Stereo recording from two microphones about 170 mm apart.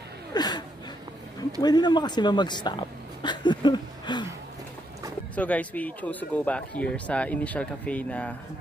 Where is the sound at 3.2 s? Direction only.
25° left (ahead or behind).